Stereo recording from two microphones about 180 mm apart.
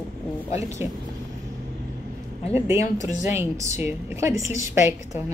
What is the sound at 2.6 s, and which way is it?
A woman's voice, 15° right (ahead or behind).